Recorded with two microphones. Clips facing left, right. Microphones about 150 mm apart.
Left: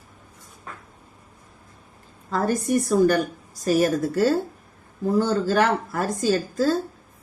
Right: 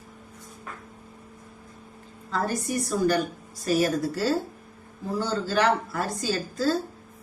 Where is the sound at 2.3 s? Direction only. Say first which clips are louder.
Left 5 dB; 50° left (ahead or behind).